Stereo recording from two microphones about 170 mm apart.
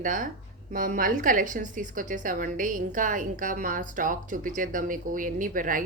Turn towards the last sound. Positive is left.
turn(degrees=-55)  # may be behind; listen again after turning